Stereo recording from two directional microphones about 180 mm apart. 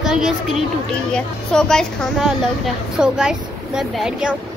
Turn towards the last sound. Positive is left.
turn(degrees=-5)  # may be behind; listen again after turning